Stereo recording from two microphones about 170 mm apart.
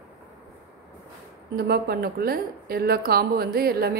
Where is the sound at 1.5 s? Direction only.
65° right (ahead or behind).